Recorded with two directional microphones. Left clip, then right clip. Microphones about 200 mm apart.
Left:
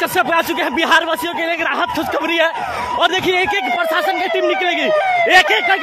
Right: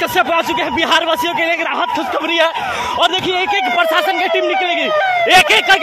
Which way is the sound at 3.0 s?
15° left (ahead or behind).